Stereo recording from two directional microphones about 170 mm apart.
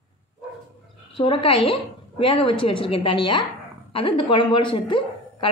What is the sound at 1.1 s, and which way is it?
A woman's voice, 30° left (ahead or behind).